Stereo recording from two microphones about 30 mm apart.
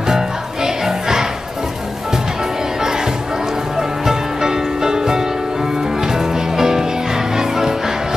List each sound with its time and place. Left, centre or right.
0.0 s music: centre
2.8 s music: centre